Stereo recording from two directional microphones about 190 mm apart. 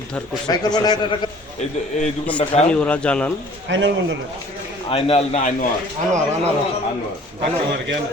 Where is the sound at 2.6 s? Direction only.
5° left (ahead or behind).